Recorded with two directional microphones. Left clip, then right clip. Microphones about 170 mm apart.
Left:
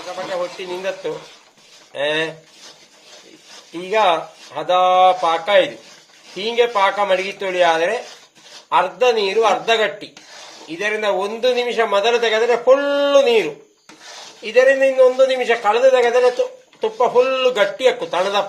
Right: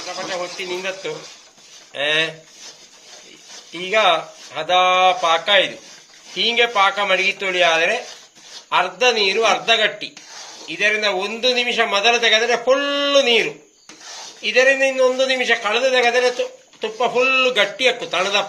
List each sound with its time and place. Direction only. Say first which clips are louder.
0.6 s a man's voice: left 1 dB; 30° left (ahead or behind)
3.7 s a man's voice: even; 35° left (ahead or behind)
14.4 s a man's voice: left 2 dB; 40° left (ahead or behind)